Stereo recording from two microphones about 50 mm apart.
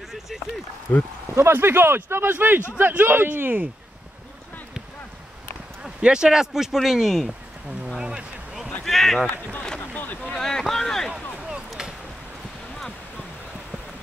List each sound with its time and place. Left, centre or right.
0.9 s speech: left
1.3 s speech: right
5.8 s speech: right; by 7.3 s centre
8.0 s a sound: centre
8.6 s run: centre
9.8 s boat: left
10.3 s boat: centre
11.1 s a sound: centre